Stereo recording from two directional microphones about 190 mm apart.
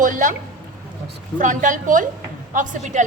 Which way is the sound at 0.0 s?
40° right (ahead or behind).